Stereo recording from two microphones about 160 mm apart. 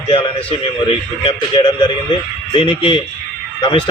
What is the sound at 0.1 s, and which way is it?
A man's voice, 30° left (ahead or behind).